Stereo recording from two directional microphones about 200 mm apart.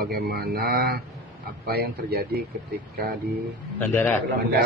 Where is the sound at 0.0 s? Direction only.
50° right (ahead or behind).